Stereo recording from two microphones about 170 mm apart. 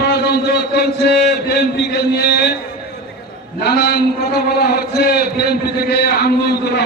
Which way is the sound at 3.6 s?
75° left (ahead or behind).